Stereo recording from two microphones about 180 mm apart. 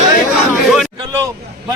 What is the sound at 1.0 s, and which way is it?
Speech, 20° right (ahead or behind).